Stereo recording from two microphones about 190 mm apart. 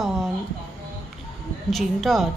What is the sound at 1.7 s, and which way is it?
Speech, centre (ahead or behind).